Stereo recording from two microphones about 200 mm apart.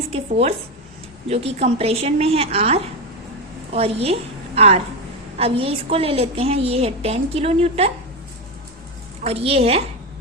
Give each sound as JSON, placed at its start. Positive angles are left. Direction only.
{"t": 0.1, "sound": "a woman's voice", "side_deg": -30}
{"t": 9.2, "sound": "a woman's voice", "side_deg": -30}